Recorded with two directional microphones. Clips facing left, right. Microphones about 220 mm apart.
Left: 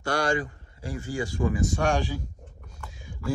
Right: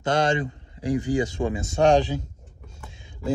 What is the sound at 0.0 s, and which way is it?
Speech, 20° right (ahead or behind).